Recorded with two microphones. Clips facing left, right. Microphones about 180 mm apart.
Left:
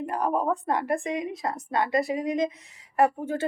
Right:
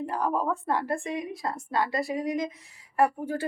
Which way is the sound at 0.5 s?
15° left (ahead or behind).